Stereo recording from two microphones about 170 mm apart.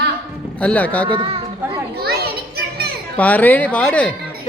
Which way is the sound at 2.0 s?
65° right (ahead or behind).